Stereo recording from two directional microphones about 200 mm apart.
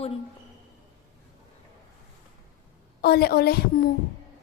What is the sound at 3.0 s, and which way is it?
Speech, 50° left (ahead or behind).